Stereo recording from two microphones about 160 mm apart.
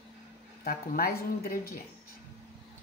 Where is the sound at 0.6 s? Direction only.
70° left (ahead or behind).